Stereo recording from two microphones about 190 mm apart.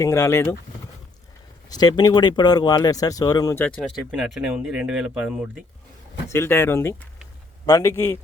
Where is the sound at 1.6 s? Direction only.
20° left (ahead or behind).